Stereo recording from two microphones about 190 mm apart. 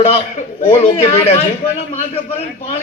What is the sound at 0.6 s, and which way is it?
Speech, 30° left (ahead or behind).